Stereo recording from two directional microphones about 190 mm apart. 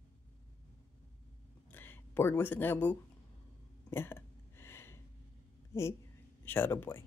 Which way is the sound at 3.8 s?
10° left (ahead or behind).